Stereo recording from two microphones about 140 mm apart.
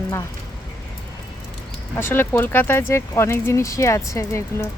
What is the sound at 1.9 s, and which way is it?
Speech, 15° left (ahead or behind).